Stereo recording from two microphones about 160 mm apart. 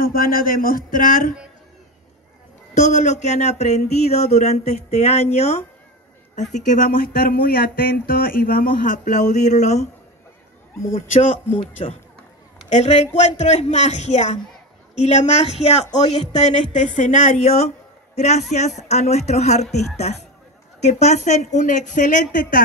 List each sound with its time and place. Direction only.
0.0 s speech: 65° left (ahead or behind)
2.7 s speech: 45° left (ahead or behind)
11.1 s speech: 50° left (ahead or behind)
11.5 s a man's voice: 35° left (ahead or behind)
20.8 s speech: 45° left (ahead or behind)